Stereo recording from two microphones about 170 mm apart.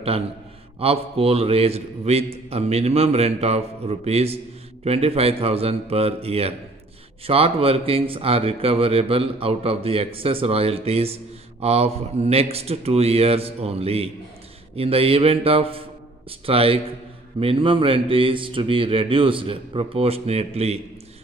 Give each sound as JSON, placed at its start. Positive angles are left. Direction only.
{"t": 0.7, "sound": "speech", "side_deg": -35}